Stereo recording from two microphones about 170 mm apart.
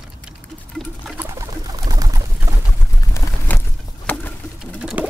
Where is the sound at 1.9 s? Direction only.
20° right (ahead or behind).